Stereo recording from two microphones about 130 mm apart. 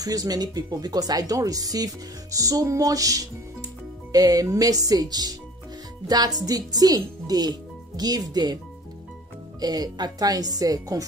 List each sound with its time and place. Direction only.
0.0 s speech: 30° right (ahead or behind)
9.6 s speech: 30° right (ahead or behind)